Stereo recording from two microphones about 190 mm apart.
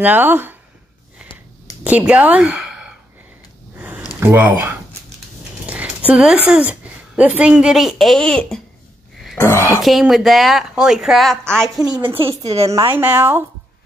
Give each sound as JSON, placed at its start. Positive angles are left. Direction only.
{"t": 0.0, "sound": "speech", "side_deg": -10}
{"t": 1.9, "sound": "speech", "side_deg": -5}
{"t": 3.7, "sound": "a sound", "side_deg": -10}
{"t": 4.2, "sound": "speech", "side_deg": -10}
{"t": 5.7, "sound": "a woman's voice", "side_deg": -5}
{"t": 9.4, "sound": "speech", "side_deg": 15}
{"t": 9.8, "sound": "speech", "side_deg": 0}
{"t": 12.2, "sound": "a woman's voice", "side_deg": -30}
{"t": 12.9, "sound": "speech", "side_deg": -10}